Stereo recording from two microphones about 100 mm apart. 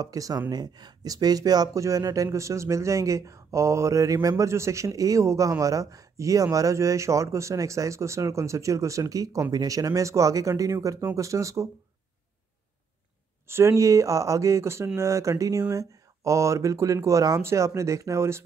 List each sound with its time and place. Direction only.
0.0 s speech: 35° right (ahead or behind)
13.5 s speech: 25° right (ahead or behind)